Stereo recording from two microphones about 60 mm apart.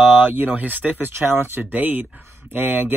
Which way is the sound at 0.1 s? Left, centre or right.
Right.